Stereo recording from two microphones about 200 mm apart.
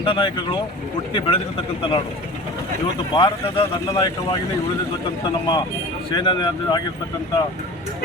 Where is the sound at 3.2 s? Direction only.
25° left (ahead or behind).